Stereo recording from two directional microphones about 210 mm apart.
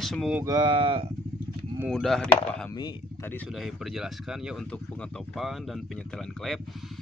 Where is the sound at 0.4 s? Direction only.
20° right (ahead or behind).